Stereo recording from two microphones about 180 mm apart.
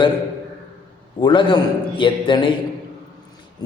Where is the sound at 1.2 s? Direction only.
25° left (ahead or behind).